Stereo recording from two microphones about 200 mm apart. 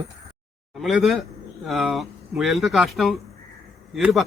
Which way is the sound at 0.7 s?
Centre (ahead or behind).